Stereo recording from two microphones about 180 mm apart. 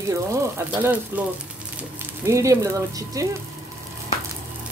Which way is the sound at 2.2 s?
15° right (ahead or behind).